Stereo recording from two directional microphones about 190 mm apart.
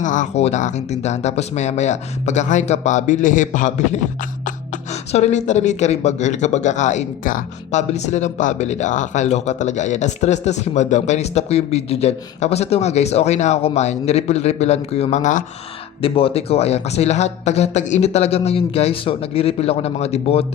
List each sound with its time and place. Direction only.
0.0 s speech: 40° left (ahead or behind)
5.1 s speech: 35° left (ahead or behind)
16.0 s speech: 30° left (ahead or behind)